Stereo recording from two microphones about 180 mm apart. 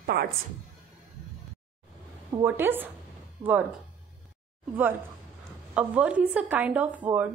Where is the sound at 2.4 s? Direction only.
10° right (ahead or behind).